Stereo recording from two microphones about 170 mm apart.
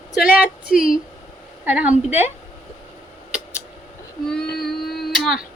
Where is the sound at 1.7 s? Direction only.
10° right (ahead or behind).